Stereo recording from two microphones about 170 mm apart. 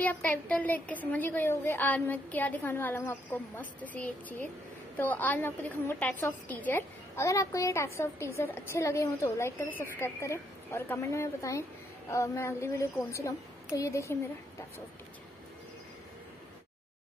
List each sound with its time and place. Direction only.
0.0 s a woman's voice: 10° left (ahead or behind)